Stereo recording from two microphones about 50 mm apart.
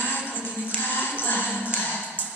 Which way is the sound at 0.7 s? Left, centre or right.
Left.